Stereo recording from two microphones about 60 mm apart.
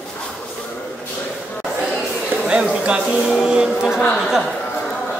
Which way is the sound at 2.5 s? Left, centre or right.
Centre.